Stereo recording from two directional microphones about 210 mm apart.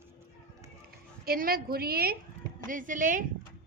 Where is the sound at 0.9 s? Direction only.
45° right (ahead or behind).